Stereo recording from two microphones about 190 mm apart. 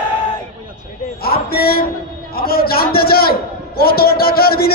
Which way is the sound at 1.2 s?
55° left (ahead or behind).